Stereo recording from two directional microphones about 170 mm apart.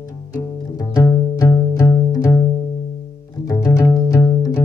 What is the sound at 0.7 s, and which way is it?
Music, 20° left (ahead or behind).